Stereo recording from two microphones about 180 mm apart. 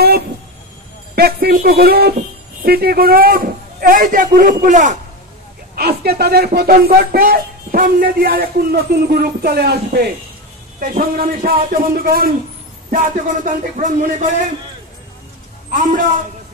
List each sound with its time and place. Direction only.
1.1 s speech: 60° right (ahead or behind); by 4.9 s 45° right (ahead or behind)
5.8 s speech: 60° right (ahead or behind); by 14.3 s 45° right (ahead or behind)
15.7 s speech: 45° right (ahead or behind)